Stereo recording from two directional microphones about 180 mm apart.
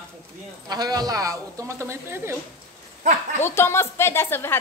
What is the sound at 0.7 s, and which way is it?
A woman's voice, 20° right (ahead or behind).